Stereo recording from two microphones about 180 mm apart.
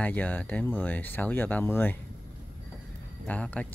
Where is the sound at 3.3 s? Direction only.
5° left (ahead or behind).